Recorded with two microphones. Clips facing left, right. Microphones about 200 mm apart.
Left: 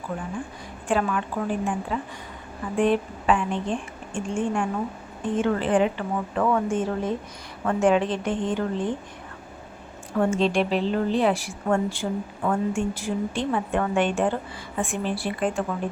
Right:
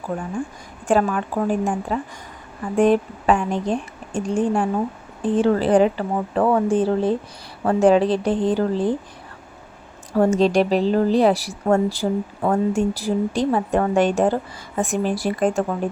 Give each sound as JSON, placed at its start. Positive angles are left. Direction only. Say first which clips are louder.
{"t": 0.9, "sound": "speech", "louder": "right 5 dB", "side_deg": -45}
{"t": 10.2, "sound": "speech", "louder": "right 5 dB", "side_deg": -40}